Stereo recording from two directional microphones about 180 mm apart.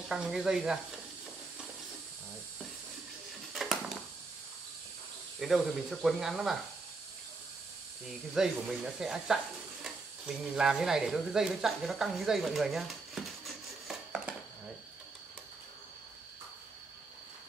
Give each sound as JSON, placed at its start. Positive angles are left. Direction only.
{"t": 0.1, "sound": "speech", "side_deg": -5}
{"t": 3.5, "sound": "a sound", "side_deg": -5}
{"t": 5.4, "sound": "speech", "side_deg": 0}
{"t": 8.4, "sound": "speech", "side_deg": -5}
{"t": 13.8, "sound": "dishes", "side_deg": -5}